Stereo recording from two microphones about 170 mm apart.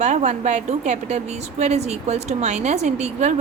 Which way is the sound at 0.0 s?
40° right (ahead or behind).